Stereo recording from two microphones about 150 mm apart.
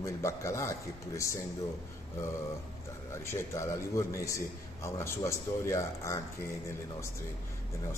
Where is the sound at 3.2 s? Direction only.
20° left (ahead or behind).